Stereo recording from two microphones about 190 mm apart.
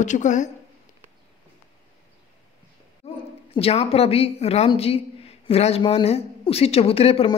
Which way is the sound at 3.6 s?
30° left (ahead or behind).